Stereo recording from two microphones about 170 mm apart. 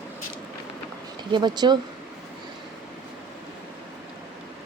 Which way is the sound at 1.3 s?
25° right (ahead or behind).